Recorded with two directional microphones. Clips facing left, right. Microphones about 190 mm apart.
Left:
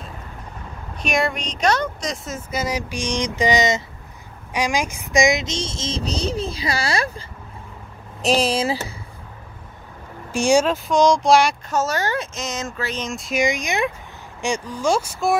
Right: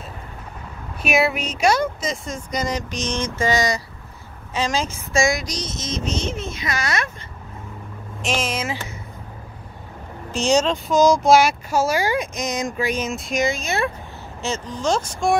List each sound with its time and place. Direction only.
1.0 s speech: 5° right (ahead or behind); by 3.8 s 20° left (ahead or behind)
4.6 s child singing: 15° left (ahead or behind); by 7.2 s 30° left (ahead or behind)
8.2 s speech: 35° left (ahead or behind)
10.3 s speech: 10° left (ahead or behind)
10.9 s speech: 5° right (ahead or behind)
13.4 s speech: 15° left (ahead or behind)